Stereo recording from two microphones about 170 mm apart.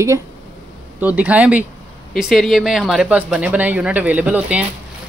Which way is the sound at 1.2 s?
10° right (ahead or behind).